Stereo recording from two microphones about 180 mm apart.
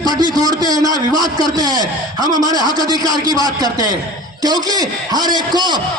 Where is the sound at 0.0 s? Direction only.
20° right (ahead or behind).